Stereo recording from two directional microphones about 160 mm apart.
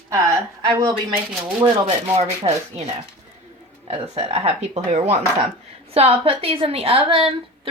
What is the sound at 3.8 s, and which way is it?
A woman's voice, 40° right (ahead or behind).